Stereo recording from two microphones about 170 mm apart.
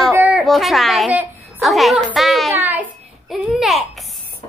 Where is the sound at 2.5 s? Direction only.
10° right (ahead or behind).